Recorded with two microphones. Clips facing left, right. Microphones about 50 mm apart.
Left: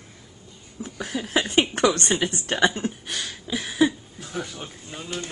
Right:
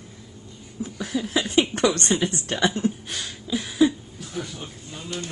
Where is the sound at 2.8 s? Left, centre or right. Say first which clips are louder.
Right 3 dB; left.